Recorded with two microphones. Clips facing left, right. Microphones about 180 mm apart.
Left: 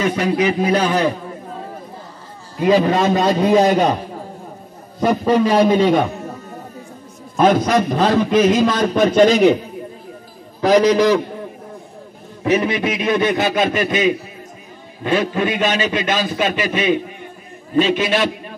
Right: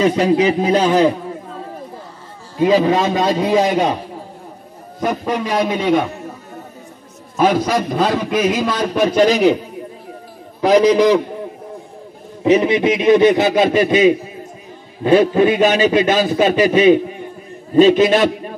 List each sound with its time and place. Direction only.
0.0 s a man's voice: 30° right (ahead or behind)
2.6 s a man's voice: 15° right (ahead or behind)
5.7 s a man's voice: 5° right (ahead or behind)
7.3 s a man's voice: 5° right (ahead or behind)
10.6 s a man's voice: 15° right (ahead or behind)
12.4 s a man's voice: 20° right (ahead or behind); by 18.3 s 35° right (ahead or behind)